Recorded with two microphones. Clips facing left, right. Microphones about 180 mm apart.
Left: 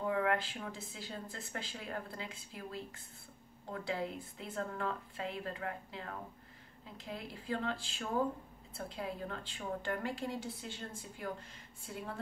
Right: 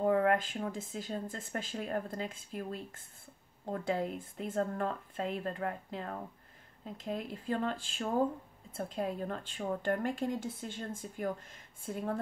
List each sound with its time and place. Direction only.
0.0 s speech: 45° right (ahead or behind)